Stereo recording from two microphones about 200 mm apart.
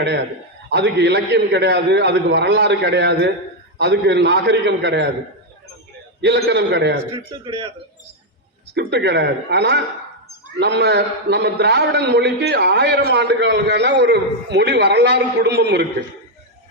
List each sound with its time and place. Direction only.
0.7 s a man's voice: 60° right (ahead or behind)
6.2 s a man's voice: 55° right (ahead or behind)
7.1 s speech: 25° right (ahead or behind)
8.7 s a man's voice: 55° right (ahead or behind)